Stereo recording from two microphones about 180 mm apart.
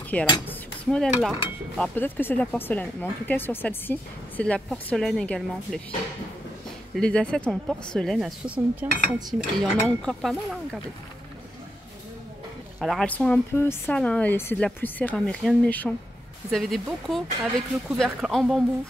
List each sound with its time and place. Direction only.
0.1 s speech: 5° left (ahead or behind)
0.5 s a sound: 5° left (ahead or behind)
1.8 s speech: 10° left (ahead or behind)
7.0 s speech: 5° left (ahead or behind)
8.8 s dishes: 10° right (ahead or behind)
9.6 s speech: centre (ahead or behind)
12.8 s speech: 5° left (ahead or behind)